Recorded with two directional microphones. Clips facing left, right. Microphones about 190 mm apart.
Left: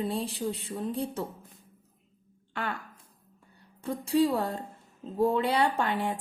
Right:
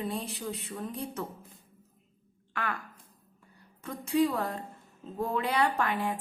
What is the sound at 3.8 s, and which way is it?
A woman's voice, 30° left (ahead or behind).